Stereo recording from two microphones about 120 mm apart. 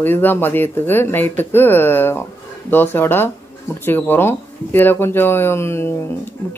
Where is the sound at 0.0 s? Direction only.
15° left (ahead or behind).